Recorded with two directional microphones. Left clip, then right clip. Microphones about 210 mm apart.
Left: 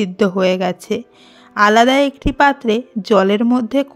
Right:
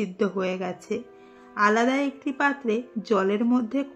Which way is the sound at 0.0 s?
50° left (ahead or behind).